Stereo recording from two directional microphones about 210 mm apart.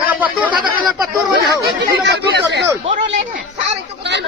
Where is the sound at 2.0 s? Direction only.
55° right (ahead or behind).